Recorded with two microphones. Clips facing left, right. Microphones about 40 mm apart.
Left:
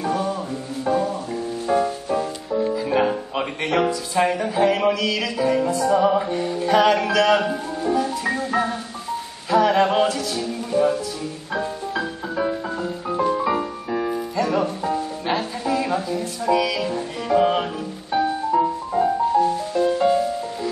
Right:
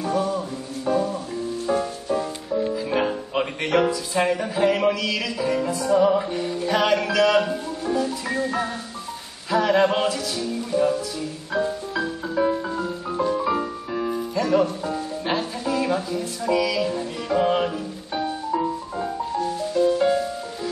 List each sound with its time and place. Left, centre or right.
0.0 s music: centre
2.9 s speech: centre
9.5 s music: centre
15.7 s speech: centre
18.5 s music: centre
20.1 s music: centre